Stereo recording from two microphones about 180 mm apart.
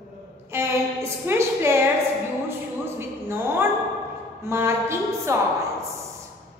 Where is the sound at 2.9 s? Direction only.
15° right (ahead or behind).